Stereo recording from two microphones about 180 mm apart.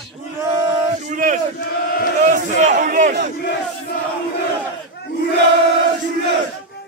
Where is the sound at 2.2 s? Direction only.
50° right (ahead or behind).